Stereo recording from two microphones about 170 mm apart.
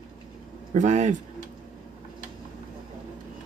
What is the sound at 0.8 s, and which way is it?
Speech, 45° right (ahead or behind).